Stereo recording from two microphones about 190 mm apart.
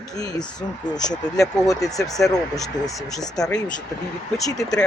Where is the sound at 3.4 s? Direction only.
20° left (ahead or behind).